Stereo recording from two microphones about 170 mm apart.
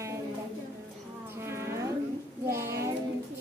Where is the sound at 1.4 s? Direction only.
15° right (ahead or behind).